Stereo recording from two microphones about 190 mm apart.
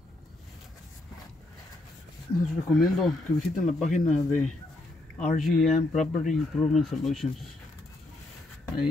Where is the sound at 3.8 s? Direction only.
40° left (ahead or behind).